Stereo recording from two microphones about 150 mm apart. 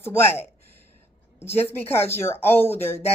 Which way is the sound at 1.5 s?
15° left (ahead or behind).